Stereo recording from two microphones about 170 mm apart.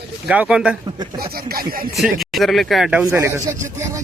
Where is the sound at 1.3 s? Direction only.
60° right (ahead or behind).